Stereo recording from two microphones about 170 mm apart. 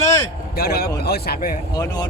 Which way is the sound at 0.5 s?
65° left (ahead or behind).